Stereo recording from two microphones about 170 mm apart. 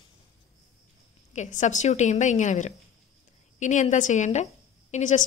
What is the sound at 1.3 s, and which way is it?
A woman's voice, 45° left (ahead or behind).